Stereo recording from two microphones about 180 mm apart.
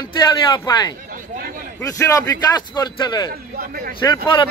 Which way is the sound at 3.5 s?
55° right (ahead or behind).